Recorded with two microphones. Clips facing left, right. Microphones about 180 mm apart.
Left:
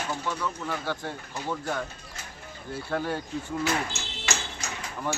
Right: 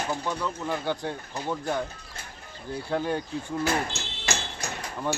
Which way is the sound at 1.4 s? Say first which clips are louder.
Right 2 dB; 20° right (ahead or behind).